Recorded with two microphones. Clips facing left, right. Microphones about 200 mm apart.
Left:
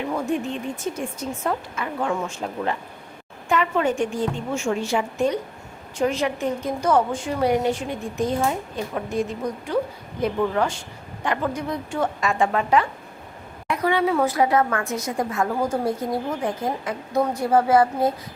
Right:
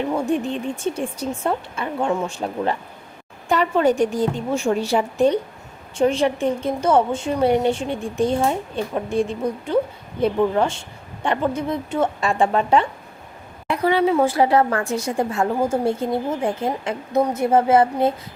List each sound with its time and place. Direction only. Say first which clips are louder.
0.9 s a woman's voice: right 3 dB; 30° right (ahead or behind)